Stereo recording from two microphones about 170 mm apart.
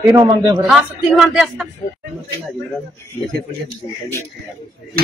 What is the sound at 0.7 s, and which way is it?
A woman's voice, centre (ahead or behind).